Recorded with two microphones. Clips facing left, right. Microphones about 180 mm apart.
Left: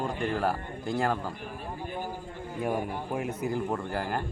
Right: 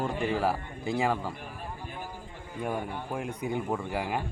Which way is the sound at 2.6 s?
5° left (ahead or behind).